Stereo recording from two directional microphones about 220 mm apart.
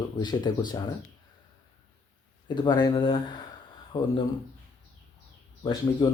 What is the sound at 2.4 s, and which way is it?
Speech, 20° left (ahead or behind).